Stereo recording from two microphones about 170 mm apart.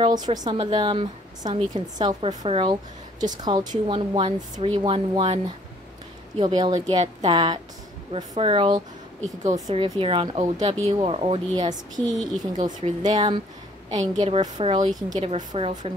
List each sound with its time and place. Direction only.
0.0 s a woman's voice: 25° right (ahead or behind)
9.8 s a woman's voice: 30° right (ahead or behind)
12.0 s a woman's voice: centre (ahead or behind)
13.0 s a woman's voice: 25° right (ahead or behind)
15.5 s a woman's voice: 35° right (ahead or behind)